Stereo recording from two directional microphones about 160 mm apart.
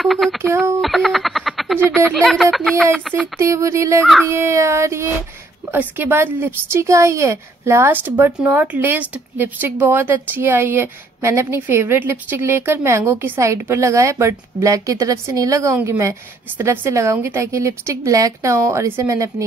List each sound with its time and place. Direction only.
0.0 s speech: centre (ahead or behind)
0.7 s a sound: centre (ahead or behind)
2.0 s speech: 5° left (ahead or behind)
3.3 s a woman's voice: 20° right (ahead or behind)
4.0 s speech: 5° left (ahead or behind)
4.3 s a woman's voice: 15° right (ahead or behind)